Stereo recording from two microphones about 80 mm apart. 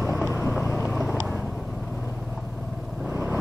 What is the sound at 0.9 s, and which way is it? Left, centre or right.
Vehicle, centre.